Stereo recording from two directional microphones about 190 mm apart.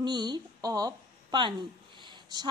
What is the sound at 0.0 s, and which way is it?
A woman's voice, 25° right (ahead or behind).